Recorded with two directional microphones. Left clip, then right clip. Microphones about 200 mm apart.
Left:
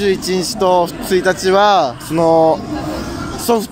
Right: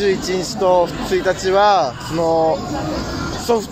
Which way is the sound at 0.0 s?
55° left (ahead or behind).